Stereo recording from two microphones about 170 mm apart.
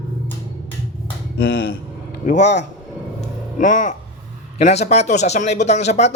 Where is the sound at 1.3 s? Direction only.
90° left.